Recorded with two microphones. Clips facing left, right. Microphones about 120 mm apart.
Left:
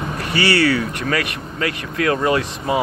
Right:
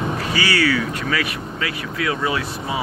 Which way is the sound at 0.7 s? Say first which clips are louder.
Left 1 dB; 50° left (ahead or behind).